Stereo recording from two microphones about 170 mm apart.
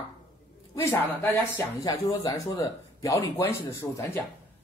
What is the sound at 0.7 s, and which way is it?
A woman's voice, 15° left (ahead or behind).